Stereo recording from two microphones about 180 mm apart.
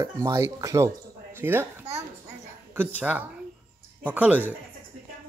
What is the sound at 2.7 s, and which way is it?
A woman's voice, 10° right (ahead or behind).